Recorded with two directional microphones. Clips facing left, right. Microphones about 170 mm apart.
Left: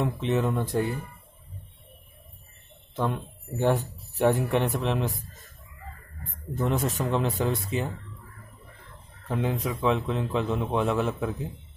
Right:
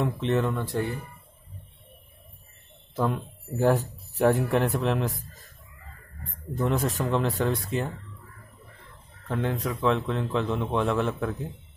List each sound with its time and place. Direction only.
0.0 s a man's voice: centre (ahead or behind)
0.5 s speech: 15° left (ahead or behind)
3.2 s a man's voice: centre (ahead or behind)
9.3 s a man's voice: 5° left (ahead or behind)